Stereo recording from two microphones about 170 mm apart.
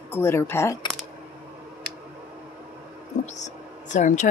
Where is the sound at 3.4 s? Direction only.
45° left (ahead or behind).